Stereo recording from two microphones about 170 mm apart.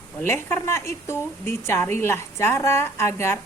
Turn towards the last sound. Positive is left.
turn(degrees=15)  # may be behind; listen again after turning